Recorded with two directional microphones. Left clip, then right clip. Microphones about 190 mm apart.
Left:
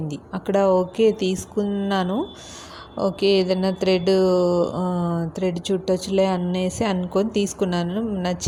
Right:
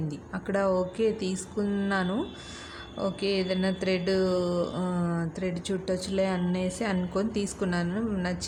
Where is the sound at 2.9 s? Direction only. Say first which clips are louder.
Left 10 dB; 25° left (ahead or behind).